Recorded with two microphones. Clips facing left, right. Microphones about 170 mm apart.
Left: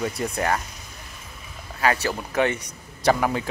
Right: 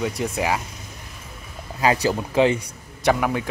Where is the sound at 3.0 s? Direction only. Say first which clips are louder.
Right 1 dB; centre (ahead or behind).